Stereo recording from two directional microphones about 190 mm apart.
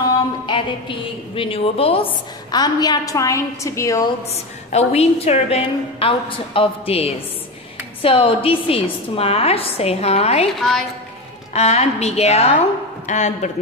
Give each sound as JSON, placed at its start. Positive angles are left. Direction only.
{"t": 0.5, "sound": "a woman's voice", "side_deg": 25}
{"t": 4.3, "sound": "a woman's voice", "side_deg": 35}
{"t": 10.6, "sound": "a woman's voice", "side_deg": 0}
{"t": 11.5, "sound": "a woman's voice", "side_deg": 35}